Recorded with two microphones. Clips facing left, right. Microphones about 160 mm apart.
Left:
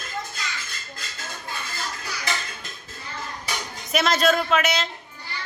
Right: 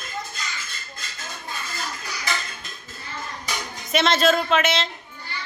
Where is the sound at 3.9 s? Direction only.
Centre (ahead or behind).